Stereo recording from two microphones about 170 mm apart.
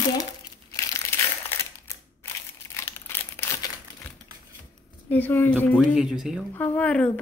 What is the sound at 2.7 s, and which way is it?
Crumpling, 15° left (ahead or behind).